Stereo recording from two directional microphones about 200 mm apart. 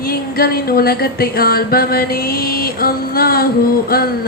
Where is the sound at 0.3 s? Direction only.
50° left (ahead or behind).